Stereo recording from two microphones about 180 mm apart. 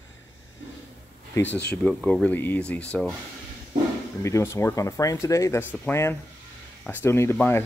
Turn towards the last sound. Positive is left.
turn(degrees=15)  # may be behind; listen again after turning